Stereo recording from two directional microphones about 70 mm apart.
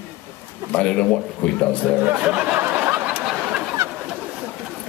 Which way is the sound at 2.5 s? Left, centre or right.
Right.